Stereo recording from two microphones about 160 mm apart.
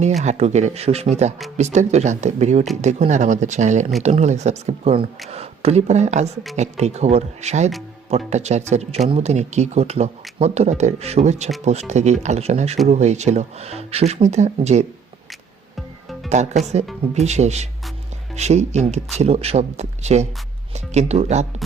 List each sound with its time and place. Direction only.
0.0 s speech: 45° right (ahead or behind)
15.7 s music: centre (ahead or behind)
16.3 s speech: 45° right (ahead or behind)